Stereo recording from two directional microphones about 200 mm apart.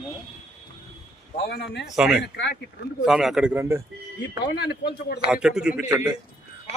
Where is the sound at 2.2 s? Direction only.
60° left (ahead or behind).